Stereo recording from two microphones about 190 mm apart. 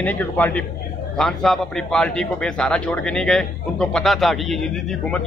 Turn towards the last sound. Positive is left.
turn(degrees=0)  # may be behind; listen again after turning